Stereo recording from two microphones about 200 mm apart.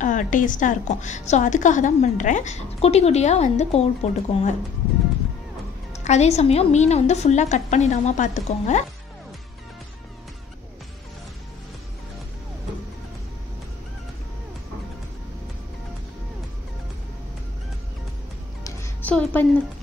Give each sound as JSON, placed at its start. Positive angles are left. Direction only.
{"t": 0.0, "sound": "a woman's voice", "side_deg": 40}
{"t": 6.0, "sound": "a woman's voice", "side_deg": 35}
{"t": 18.6, "sound": "music", "side_deg": 10}